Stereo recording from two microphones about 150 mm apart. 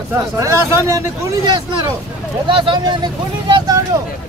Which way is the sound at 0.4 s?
20° right (ahead or behind).